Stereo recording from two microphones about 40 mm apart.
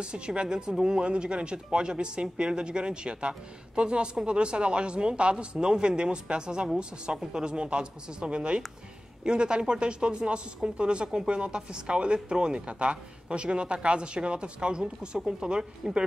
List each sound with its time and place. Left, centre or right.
0.0 s speech: right